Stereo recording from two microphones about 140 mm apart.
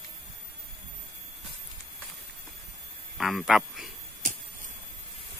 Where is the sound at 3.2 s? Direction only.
Centre (ahead or behind).